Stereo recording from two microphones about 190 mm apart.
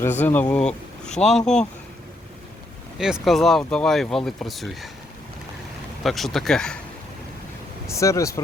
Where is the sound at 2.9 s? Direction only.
5° right (ahead or behind).